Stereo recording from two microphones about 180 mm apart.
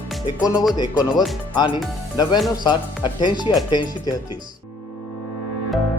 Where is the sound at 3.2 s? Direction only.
25° left (ahead or behind).